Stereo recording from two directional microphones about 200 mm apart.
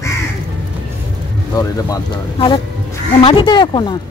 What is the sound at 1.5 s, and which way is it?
Speech, 20° left (ahead or behind).